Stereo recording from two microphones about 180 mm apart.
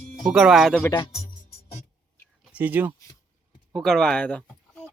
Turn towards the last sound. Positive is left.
turn(degrees=5)  # may be behind; listen again after turning